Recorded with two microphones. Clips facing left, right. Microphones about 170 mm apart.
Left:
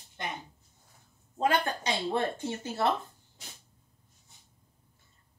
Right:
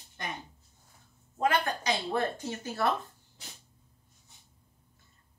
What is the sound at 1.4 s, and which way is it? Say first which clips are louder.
Speech: left 1 dB; 30° left (ahead or behind).